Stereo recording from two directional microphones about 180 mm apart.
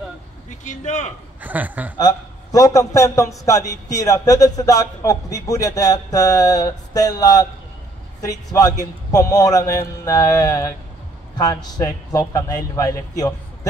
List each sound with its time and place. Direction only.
0.5 s speech: 40° left (ahead or behind)
1.4 s speech: 10° right (ahead or behind)
2.0 s a man's voice: 20° left (ahead or behind)